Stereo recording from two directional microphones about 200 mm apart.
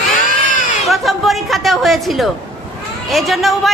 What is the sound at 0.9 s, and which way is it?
Chatter, centre (ahead or behind).